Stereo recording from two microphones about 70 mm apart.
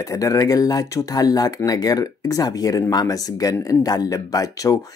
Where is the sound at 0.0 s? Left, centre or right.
Left.